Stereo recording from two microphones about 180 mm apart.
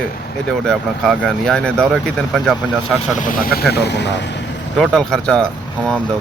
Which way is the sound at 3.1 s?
50° left (ahead or behind).